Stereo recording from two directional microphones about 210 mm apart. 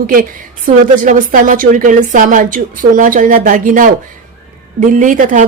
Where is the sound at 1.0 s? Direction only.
40° right (ahead or behind).